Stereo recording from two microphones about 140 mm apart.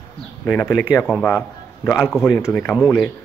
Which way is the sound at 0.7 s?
5° right (ahead or behind).